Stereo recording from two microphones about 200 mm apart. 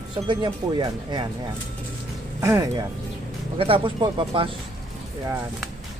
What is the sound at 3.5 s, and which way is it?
Speech, 25° right (ahead or behind).